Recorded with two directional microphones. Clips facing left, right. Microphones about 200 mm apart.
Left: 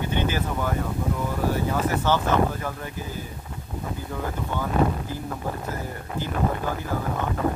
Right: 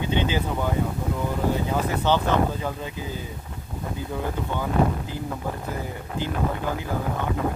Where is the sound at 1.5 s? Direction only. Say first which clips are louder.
Even; 15° right (ahead or behind).